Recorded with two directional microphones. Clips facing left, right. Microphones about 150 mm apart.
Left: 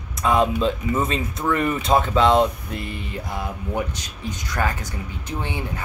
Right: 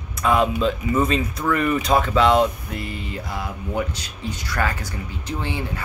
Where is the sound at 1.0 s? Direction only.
25° left (ahead or behind).